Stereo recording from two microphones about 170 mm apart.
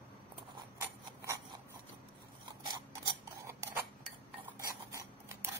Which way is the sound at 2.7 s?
20° right (ahead or behind).